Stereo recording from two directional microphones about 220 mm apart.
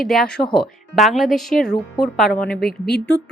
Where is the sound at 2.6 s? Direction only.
45° left (ahead or behind).